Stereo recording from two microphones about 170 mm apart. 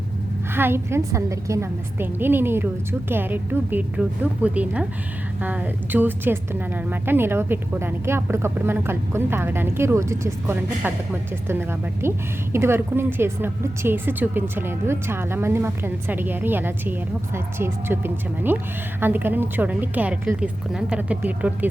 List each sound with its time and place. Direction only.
0.5 s a woman's voice: 15° right (ahead or behind)